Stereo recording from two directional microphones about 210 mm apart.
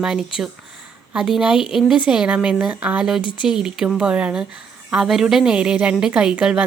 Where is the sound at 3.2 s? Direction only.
25° left (ahead or behind).